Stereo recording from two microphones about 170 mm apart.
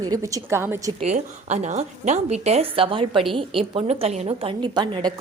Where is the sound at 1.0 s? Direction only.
45° right (ahead or behind).